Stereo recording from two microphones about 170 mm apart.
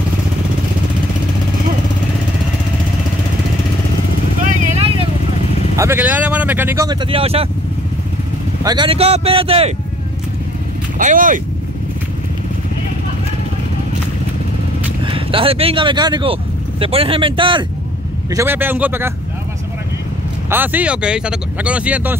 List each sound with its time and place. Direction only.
4.5 s vehicle: 40° right (ahead or behind)
5.8 s speech: 10° right (ahead or behind)
7.0 s speech: 35° right (ahead or behind)
8.6 s speech: 30° right (ahead or behind)
11.0 s speech: 50° right (ahead or behind)
15.0 s speech: 30° right (ahead or behind)
18.3 s speech: 15° right (ahead or behind)
20.4 s speech: 10° right (ahead or behind)